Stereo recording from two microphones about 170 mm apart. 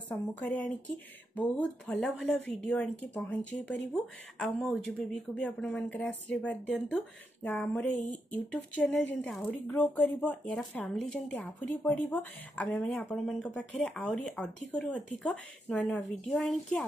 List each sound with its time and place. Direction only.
0.1 s a woman's voice: 10° left (ahead or behind)